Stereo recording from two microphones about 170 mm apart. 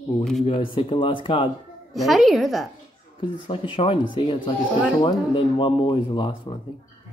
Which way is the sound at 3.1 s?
30° left (ahead or behind).